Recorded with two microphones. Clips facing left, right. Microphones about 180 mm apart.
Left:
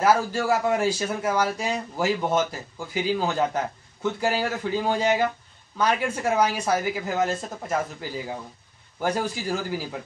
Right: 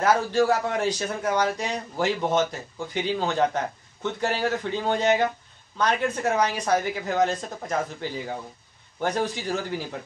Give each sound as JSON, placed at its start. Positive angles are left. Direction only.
{"t": 0.0, "sound": "speech", "side_deg": 5}